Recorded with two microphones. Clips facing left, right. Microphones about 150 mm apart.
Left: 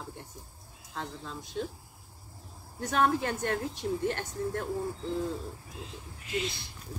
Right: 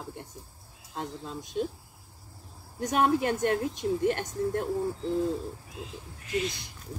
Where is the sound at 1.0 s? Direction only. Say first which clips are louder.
Right 3 dB; 20° right (ahead or behind).